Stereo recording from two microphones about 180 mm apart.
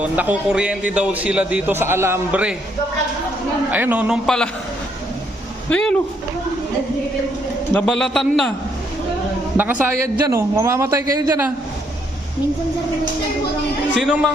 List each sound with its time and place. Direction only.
0.0 s a man's voice: 10° right (ahead or behind)
3.7 s a man's voice: 10° right (ahead or behind)
5.7 s speech: 10° left (ahead or behind)
7.7 s a man's voice: 5° left (ahead or behind)
9.6 s a man's voice: 10° right (ahead or behind)
13.9 s a man's voice: centre (ahead or behind)